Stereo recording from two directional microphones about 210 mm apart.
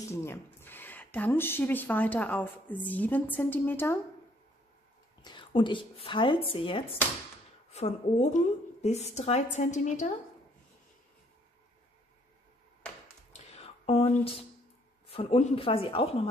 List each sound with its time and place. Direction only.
0.1 s speech: 10° left (ahead or behind)
5.2 s a woman's voice: 25° left (ahead or behind)
13.3 s a sound: 30° left (ahead or behind)
15.0 s speech: 30° left (ahead or behind)